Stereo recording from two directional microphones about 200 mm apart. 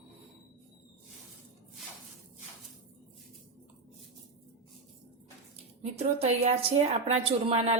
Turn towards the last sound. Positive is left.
turn(degrees=-30)  # may be behind; listen again after turning